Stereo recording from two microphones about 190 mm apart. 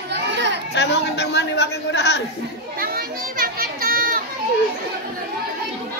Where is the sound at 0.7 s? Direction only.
65° left (ahead or behind).